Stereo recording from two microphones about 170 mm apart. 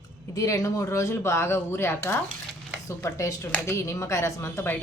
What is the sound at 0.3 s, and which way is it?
Speech, 20° left (ahead or behind).